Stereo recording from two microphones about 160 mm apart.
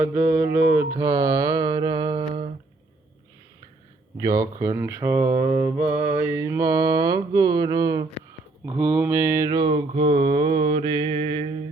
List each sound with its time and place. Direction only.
0.0 s mantra: 15° right (ahead or behind)
4.2 s speech: 20° right (ahead or behind)
6.1 s mantra: 15° right (ahead or behind)
8.8 s mantra: 10° right (ahead or behind); by 11.5 s 30° right (ahead or behind)